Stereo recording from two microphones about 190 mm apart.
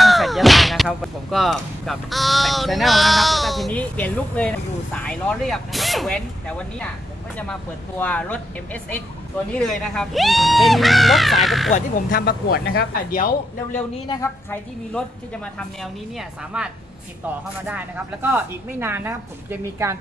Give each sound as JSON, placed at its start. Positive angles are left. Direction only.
{"t": 0.0, "sound": "a sound", "side_deg": 0}
{"t": 4.9, "sound": "a woman's voice", "side_deg": 5}
{"t": 8.0, "sound": "a woman's voice", "side_deg": 5}
{"t": 11.7, "sound": "speech", "side_deg": 50}
{"t": 14.2, "sound": "a woman's voice", "side_deg": 10}